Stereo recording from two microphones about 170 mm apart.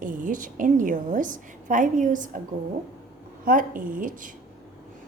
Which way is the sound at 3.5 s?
55° right (ahead or behind).